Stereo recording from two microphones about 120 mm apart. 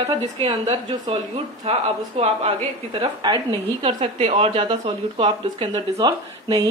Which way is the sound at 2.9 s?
40° right (ahead or behind).